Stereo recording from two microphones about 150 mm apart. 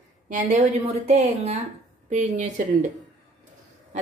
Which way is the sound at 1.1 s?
45° right (ahead or behind).